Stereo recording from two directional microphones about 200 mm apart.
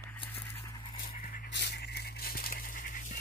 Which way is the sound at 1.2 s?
45° left (ahead or behind).